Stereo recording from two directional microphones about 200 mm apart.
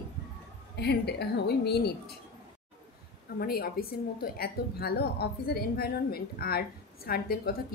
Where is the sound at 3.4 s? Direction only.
50° left (ahead or behind).